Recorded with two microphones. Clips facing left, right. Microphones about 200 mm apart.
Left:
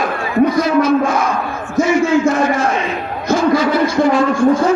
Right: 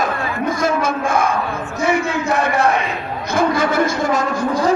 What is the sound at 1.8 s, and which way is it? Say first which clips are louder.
Speech: left 4 dB; 60° right (ahead or behind).